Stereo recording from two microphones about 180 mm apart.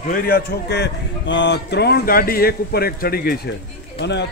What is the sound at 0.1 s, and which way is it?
A man's voice, 60° left (ahead or behind).